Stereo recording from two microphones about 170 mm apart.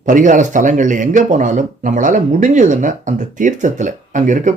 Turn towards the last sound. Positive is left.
turn(degrees=-45)  # may be behind; listen again after turning